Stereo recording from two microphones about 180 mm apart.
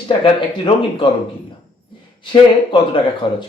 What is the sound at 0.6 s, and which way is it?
Speech, 30° left (ahead or behind).